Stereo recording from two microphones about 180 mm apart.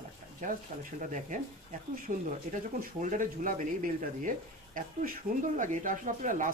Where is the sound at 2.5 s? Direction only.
45° right (ahead or behind).